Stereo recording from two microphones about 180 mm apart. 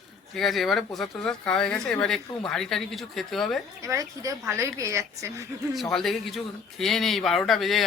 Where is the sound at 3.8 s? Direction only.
20° right (ahead or behind).